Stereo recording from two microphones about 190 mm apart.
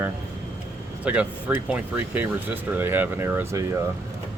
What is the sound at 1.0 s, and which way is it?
Speech, 5° right (ahead or behind).